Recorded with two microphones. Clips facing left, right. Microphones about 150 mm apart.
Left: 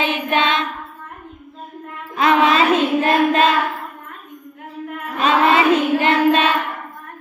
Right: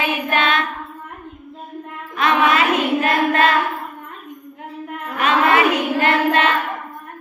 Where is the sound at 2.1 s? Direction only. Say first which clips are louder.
Left 2 dB; 25° left (ahead or behind).